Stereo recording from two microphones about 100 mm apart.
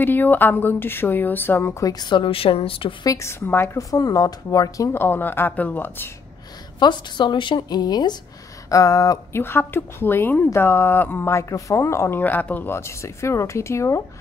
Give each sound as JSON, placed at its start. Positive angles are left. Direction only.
{"t": 0.0, "sound": "a woman's voice", "side_deg": 20}
{"t": 2.0, "sound": "a woman's voice", "side_deg": 50}
{"t": 3.0, "sound": "a woman's voice", "side_deg": 30}
{"t": 3.7, "sound": "speech", "side_deg": 35}
{"t": 4.9, "sound": "a woman's voice", "side_deg": 20}
{"t": 6.8, "sound": "a woman's voice", "side_deg": 50}
{"t": 8.6, "sound": "a sound", "side_deg": 35}
{"t": 9.4, "sound": "a woman's voice", "side_deg": 20}